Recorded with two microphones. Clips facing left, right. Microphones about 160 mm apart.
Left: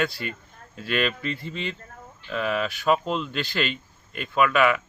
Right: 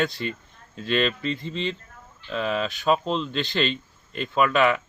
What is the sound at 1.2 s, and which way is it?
A man's voice, 25° right (ahead or behind).